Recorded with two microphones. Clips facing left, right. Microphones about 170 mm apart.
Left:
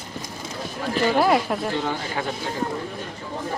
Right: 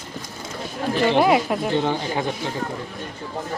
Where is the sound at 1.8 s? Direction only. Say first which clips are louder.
Right 4 dB; 20° right (ahead or behind).